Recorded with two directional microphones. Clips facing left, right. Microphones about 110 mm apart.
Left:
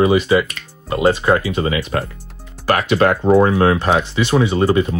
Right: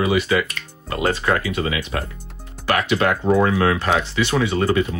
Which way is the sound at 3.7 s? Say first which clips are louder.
Left 3 dB; 20° left (ahead or behind).